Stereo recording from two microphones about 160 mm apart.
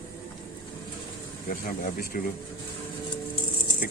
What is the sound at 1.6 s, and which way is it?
Speech, 60° left (ahead or behind).